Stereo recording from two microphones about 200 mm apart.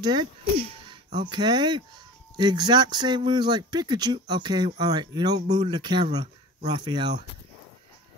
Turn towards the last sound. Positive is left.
turn(degrees=-20)  # may be behind; listen again after turning